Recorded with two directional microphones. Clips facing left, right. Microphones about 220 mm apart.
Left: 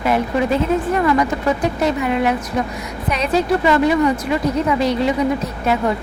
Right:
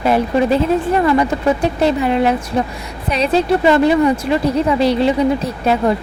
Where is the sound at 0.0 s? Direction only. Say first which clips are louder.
Right 3 dB; 30° right (ahead or behind).